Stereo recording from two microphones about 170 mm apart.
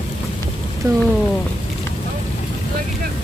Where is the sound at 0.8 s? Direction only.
20° right (ahead or behind).